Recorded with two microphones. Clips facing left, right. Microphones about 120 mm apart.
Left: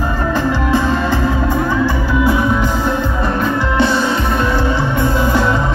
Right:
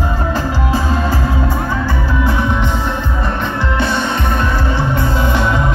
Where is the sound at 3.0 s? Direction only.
35° left (ahead or behind).